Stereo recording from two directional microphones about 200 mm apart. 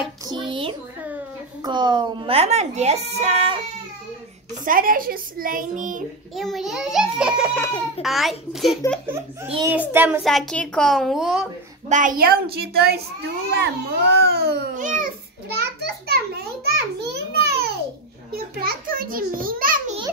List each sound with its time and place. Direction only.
0.3 s a child's voice: 25° right (ahead or behind)
4.6 s a woman's voice: 45° right (ahead or behind)
6.3 s a child's voice: centre (ahead or behind)
7.5 s laughter: 15° left (ahead or behind)
8.0 s a child's voice: centre (ahead or behind)
9.0 s a child's voice: 15° right (ahead or behind)
10.2 s a child's voice: centre (ahead or behind)
11.9 s a woman's voice: 40° right (ahead or behind)
14.8 s a woman's voice: 40° right (ahead or behind)
15.4 s a sound: 55° right (ahead or behind)